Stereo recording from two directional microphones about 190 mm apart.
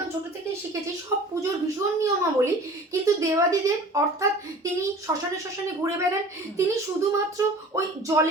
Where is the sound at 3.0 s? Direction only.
15° right (ahead or behind).